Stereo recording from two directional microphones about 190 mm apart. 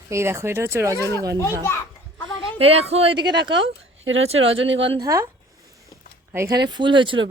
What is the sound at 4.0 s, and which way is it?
Speech, 90° right.